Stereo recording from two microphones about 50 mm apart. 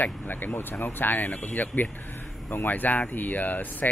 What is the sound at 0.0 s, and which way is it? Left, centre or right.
A man's voice, left.